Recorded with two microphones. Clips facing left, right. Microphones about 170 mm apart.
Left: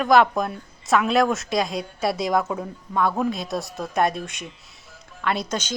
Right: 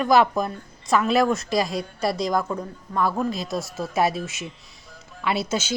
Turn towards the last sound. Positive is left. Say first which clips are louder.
# right 1 dB
turn(degrees=-5)  # may be behind; listen again after turning